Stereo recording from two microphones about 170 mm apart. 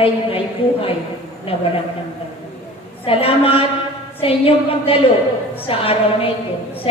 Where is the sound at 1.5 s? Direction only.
35° left (ahead or behind).